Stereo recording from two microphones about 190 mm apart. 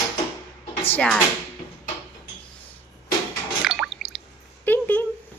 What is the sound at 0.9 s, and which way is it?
Speech, 5° left (ahead or behind).